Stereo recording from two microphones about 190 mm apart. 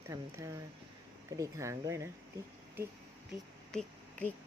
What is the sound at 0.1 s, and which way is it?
Speech, 15° right (ahead or behind).